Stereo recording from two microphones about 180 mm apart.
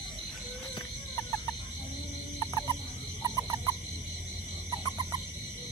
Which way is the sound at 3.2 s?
20° right (ahead or behind).